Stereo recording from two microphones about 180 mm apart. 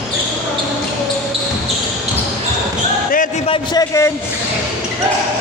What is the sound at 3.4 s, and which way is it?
Speech, 25° left (ahead or behind).